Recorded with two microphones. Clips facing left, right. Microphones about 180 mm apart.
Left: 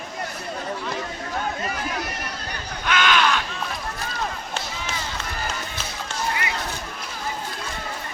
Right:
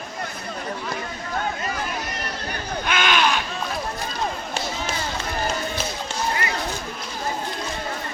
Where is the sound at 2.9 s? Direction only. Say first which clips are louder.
Left 1 dB; 15° right (ahead or behind).